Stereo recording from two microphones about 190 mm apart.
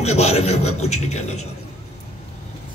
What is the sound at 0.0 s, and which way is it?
Speech, 35° left (ahead or behind).